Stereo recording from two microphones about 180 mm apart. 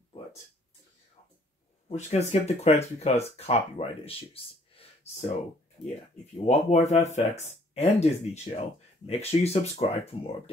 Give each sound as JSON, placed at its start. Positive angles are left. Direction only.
{"t": 1.9, "sound": "speech", "side_deg": 35}
{"t": 6.4, "sound": "speech", "side_deg": 40}